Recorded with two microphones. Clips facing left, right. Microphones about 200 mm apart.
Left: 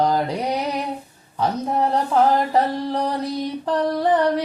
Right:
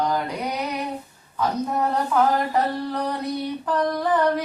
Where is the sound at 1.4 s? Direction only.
30° left (ahead or behind).